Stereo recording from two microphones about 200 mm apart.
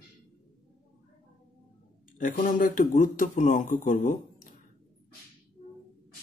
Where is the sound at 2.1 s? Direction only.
40° left (ahead or behind).